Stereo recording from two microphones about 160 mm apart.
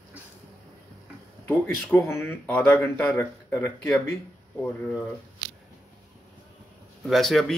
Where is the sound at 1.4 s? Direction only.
10° left (ahead or behind).